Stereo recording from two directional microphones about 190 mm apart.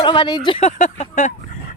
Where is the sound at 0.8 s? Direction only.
40° left (ahead or behind).